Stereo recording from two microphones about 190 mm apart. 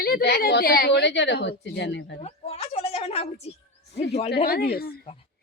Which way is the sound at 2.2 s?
30° left (ahead or behind).